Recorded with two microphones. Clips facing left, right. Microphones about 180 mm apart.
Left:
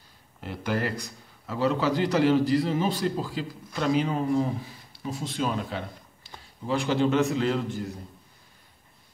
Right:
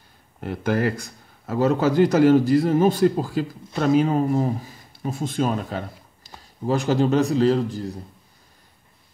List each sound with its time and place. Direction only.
0.4 s speech: 50° right (ahead or behind)